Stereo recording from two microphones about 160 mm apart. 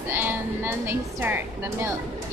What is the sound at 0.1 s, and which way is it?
A woman's voice, 15° right (ahead or behind).